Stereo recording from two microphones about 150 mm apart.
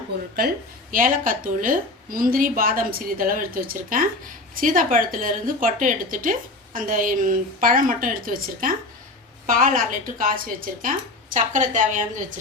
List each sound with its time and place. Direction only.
0.3 s a woman's voice: 75° right (ahead or behind); by 12.0 s 55° right (ahead or behind)